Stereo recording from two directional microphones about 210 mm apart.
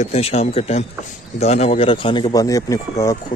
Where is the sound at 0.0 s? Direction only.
30° left (ahead or behind).